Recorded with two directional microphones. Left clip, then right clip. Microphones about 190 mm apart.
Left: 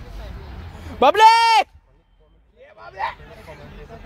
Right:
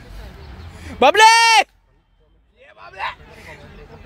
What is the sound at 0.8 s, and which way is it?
Speech, 35° right (ahead or behind).